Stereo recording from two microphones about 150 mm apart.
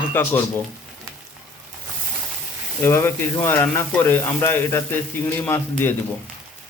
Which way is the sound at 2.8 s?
15° left (ahead or behind).